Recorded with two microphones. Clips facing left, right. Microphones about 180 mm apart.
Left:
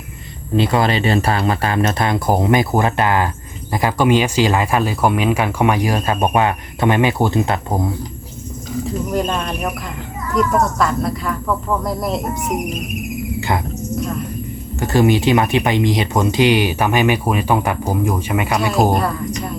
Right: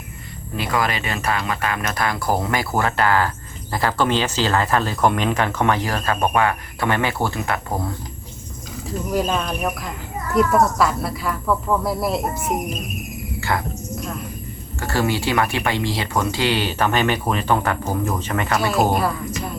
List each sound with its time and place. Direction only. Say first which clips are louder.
0.5 s speech: left 7 dB; 25° left (ahead or behind)
9.1 s speech: right 1 dB; centre (ahead or behind)
13.5 s speech: left 2 dB; 20° left (ahead or behind)
14.8 s speech: left 7 dB; 20° left (ahead or behind)
18.7 s speech: left 3 dB; centre (ahead or behind)